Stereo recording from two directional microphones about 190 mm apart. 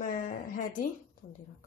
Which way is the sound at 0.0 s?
45° left (ahead or behind).